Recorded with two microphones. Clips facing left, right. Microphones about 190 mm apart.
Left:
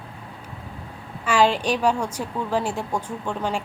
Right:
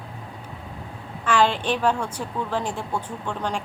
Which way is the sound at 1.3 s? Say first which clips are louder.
Left 1 dB; 10° left (ahead or behind).